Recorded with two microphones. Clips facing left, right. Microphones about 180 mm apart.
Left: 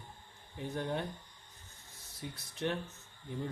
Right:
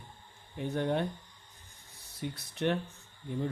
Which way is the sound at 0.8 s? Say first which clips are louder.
Right 6 dB; 65° right (ahead or behind).